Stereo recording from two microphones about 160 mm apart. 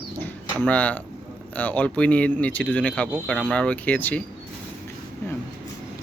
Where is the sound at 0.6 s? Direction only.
10° left (ahead or behind).